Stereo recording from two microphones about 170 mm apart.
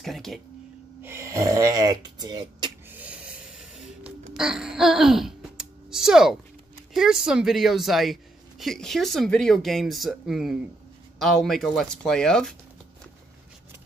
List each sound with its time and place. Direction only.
0.0 s speech: centre (ahead or behind)
1.0 s a sound: 15° right (ahead or behind)
2.9 s snort: 10° right (ahead or behind)
4.3 s wail: 5° right (ahead or behind)
6.9 s a woman's voice: centre (ahead or behind)